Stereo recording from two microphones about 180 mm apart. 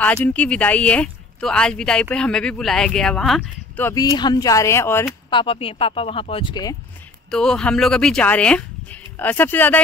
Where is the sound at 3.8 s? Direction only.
20° left (ahead or behind).